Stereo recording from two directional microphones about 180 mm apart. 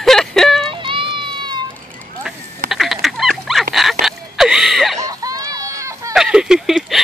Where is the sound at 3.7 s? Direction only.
Centre (ahead or behind).